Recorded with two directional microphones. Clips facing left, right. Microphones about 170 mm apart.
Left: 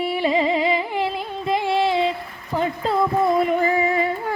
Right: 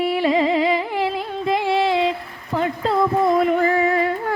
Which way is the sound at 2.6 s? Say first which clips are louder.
Right 1 dB; 5° left (ahead or behind).